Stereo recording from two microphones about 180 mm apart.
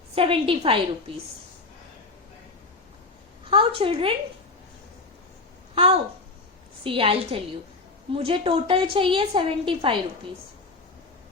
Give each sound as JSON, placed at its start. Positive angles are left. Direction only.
{"t": 0.2, "sound": "a woman's voice", "side_deg": -30}
{"t": 3.5, "sound": "a woman's voice", "side_deg": -30}
{"t": 6.8, "sound": "a woman's voice", "side_deg": -30}